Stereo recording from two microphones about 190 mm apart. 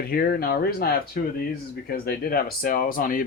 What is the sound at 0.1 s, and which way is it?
Speech, 55° left (ahead or behind).